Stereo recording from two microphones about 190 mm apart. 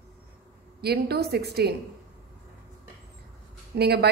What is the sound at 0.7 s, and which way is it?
Speech, 55° right (ahead or behind).